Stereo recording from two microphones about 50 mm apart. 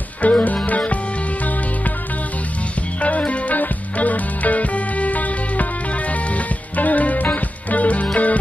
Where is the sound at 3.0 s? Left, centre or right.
Left.